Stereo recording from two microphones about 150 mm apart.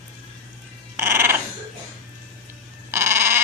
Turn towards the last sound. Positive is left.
turn(degrees=-15)  # may be behind; listen again after turning